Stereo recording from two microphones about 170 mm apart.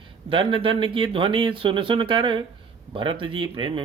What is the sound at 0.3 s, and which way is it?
Speech, 30° right (ahead or behind).